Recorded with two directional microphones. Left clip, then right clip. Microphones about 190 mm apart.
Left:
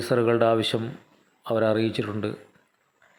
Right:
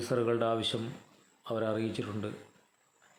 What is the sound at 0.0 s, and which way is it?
Speech, 20° left (ahead or behind).